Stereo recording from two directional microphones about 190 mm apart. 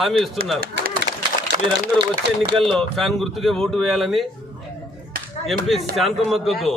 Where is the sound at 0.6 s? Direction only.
50° right (ahead or behind).